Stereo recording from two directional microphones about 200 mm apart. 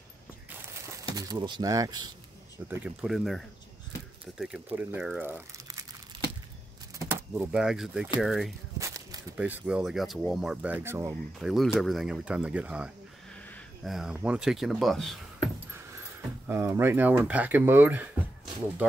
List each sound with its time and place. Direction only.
1.1 s speech: 20° right (ahead or behind)
2.7 s speech: 5° right (ahead or behind)
7.0 s speech: 10° right (ahead or behind)
8.7 s a sound: 15° right (ahead or behind)
9.4 s speech: 5° right (ahead or behind)
11.3 s speech: centre (ahead or behind)
16.4 s speech: 10° right (ahead or behind)